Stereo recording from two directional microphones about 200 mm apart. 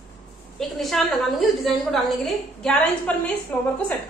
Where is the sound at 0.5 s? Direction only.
Centre (ahead or behind).